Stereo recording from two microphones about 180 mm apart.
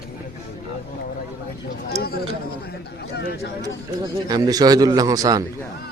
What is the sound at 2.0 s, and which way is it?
Speech, 60° left (ahead or behind).